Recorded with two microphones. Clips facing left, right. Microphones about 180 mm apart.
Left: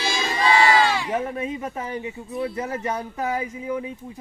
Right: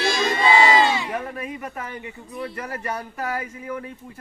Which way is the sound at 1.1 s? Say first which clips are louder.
Left 4 dB; 25° left (ahead or behind).